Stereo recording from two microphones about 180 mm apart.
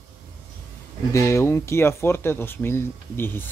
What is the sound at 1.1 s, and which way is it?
Speech, 15° left (ahead or behind).